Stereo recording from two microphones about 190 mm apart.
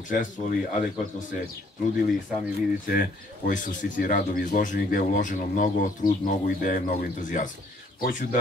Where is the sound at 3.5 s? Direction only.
40° left (ahead or behind).